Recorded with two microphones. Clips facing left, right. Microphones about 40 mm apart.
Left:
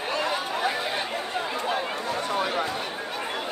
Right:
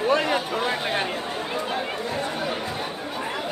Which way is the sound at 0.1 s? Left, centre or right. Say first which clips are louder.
Right 2 dB; right.